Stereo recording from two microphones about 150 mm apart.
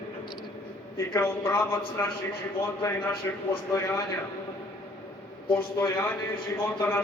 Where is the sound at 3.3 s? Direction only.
20° left (ahead or behind).